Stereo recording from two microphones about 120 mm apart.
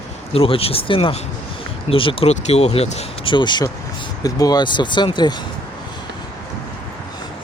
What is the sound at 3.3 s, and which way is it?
Speech, 40° left (ahead or behind).